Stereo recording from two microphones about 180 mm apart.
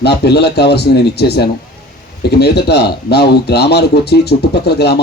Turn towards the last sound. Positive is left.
turn(degrees=65)  # may be behind; listen again after turning